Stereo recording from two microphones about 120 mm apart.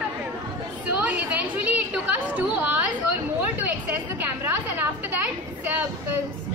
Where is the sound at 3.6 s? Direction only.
15° right (ahead or behind).